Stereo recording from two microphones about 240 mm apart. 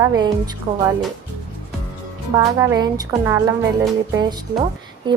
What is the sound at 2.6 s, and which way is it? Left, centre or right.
Speech, centre.